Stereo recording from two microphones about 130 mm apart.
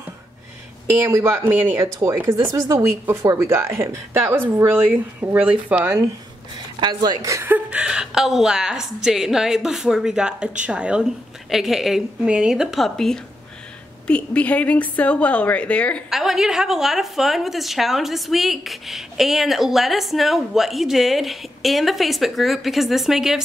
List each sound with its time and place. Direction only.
0.8 s a woman's voice: 20° right (ahead or behind)
6.8 s a woman's voice: 35° right (ahead or behind); by 16.0 s 10° left (ahead or behind)
16.1 s a woman's voice: centre (ahead or behind)